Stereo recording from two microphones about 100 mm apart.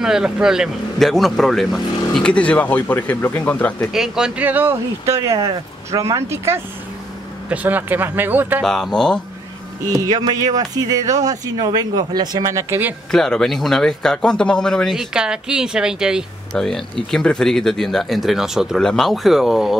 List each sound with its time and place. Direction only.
0.0 s speech: 5° right (ahead or behind); by 3.7 s 15° left (ahead or behind)
3.9 s speech: 5° right (ahead or behind)
4.5 s speech: 20° right (ahead or behind)
5.0 s speech: 30° right (ahead or behind)
8.6 s speech: 5° left (ahead or behind)
9.8 s speech: 40° right (ahead or behind)
13.1 s speech: 5° left (ahead or behind)
15.1 s speech: 10° right (ahead or behind)
16.5 s speech: 5° left (ahead or behind)